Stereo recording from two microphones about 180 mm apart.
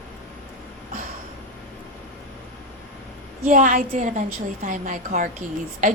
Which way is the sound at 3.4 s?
50° right (ahead or behind).